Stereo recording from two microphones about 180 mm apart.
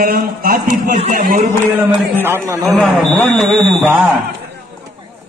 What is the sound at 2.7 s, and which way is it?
Speech, centre (ahead or behind).